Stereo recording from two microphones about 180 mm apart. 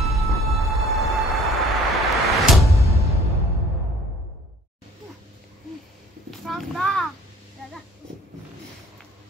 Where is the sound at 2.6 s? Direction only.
15° right (ahead or behind).